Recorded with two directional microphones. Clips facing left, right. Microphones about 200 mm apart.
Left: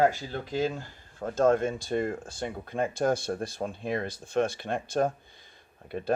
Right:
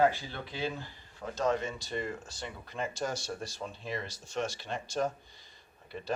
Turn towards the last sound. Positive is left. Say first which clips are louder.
# left 7 dB
turn(degrees=55)  # may be behind; listen again after turning